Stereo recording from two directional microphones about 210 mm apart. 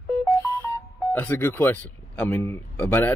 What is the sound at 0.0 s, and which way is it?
Speech, 5° left (ahead or behind).